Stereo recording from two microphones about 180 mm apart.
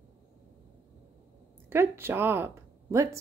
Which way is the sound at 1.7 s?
15° right (ahead or behind).